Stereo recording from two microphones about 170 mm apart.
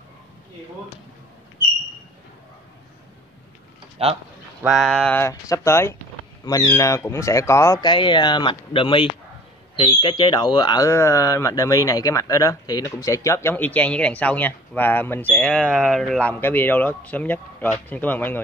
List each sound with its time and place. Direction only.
4.0 s speech: 35° right (ahead or behind)
4.6 s speech: 5° left (ahead or behind)